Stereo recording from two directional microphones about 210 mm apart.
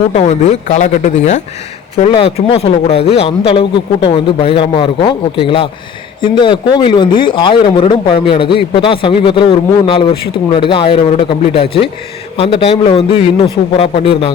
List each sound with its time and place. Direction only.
0.1 s speech: 30° left (ahead or behind)